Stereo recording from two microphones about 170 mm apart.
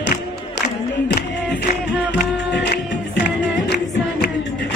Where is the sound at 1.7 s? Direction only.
65° left (ahead or behind).